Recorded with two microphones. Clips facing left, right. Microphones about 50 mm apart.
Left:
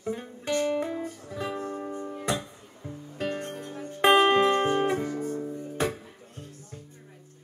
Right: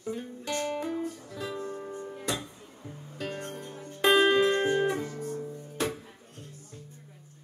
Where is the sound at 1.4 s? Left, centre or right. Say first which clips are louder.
Left 4 dB; left.